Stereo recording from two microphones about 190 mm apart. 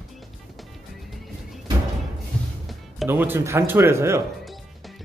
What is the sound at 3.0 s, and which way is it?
Speech, 10° right (ahead or behind).